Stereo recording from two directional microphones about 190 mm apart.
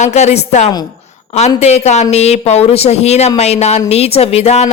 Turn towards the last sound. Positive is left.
turn(degrees=35)  # may be behind; listen again after turning